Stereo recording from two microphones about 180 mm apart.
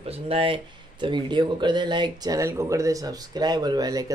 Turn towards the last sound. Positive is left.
turn(degrees=-20)  # may be behind; listen again after turning